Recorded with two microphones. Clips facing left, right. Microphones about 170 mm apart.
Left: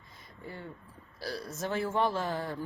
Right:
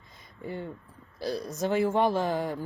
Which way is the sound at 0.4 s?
20° right (ahead or behind).